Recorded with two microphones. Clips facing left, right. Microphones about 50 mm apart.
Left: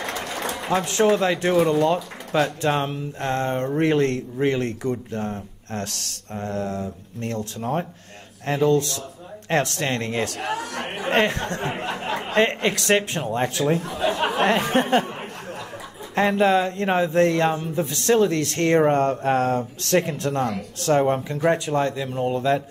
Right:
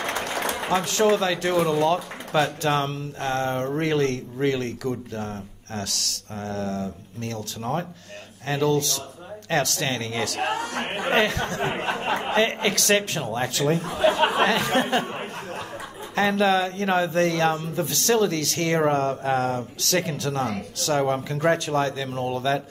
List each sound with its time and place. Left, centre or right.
0.0 s a sound: right
0.7 s speech: left
3.8 s speech: left
8.5 s speech: left
10.4 s a man's voice: right
11.1 s speech: left
11.7 s a man's voice: right
12.4 s a woman's voice: left
12.7 s speech: centre
14.1 s chatter: right
14.8 s speech: left
16.2 s speech: left
21.0 s speech: centre